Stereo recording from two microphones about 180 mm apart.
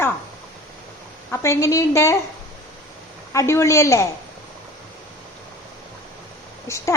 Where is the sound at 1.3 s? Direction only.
15° left (ahead or behind).